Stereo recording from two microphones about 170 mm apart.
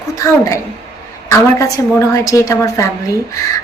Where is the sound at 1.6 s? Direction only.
20° left (ahead or behind).